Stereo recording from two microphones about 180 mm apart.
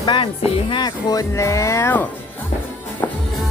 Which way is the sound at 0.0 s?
25° left (ahead or behind).